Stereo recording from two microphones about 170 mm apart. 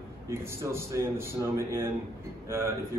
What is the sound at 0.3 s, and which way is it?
Speech, 15° right (ahead or behind).